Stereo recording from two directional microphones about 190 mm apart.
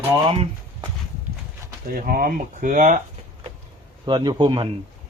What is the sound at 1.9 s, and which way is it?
Speech, 50° right (ahead or behind).